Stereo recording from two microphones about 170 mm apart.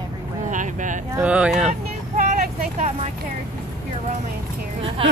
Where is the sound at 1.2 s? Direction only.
5° right (ahead or behind).